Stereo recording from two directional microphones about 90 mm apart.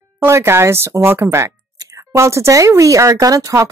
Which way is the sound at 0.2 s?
30° right (ahead or behind).